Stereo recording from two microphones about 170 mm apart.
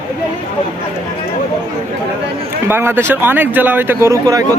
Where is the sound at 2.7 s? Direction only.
15° right (ahead or behind).